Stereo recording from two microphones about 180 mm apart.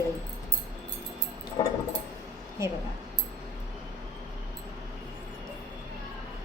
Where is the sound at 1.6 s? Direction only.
25° left (ahead or behind).